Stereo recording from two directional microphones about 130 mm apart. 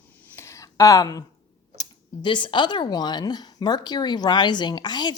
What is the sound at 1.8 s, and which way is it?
Speech, 35° left (ahead or behind).